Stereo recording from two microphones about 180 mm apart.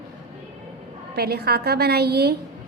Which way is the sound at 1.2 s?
60° right (ahead or behind).